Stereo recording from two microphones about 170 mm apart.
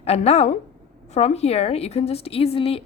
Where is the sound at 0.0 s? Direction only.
40° left (ahead or behind).